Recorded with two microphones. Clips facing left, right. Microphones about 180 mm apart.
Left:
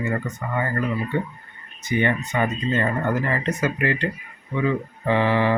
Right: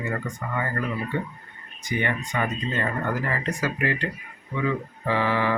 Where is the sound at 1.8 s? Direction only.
25° left (ahead or behind).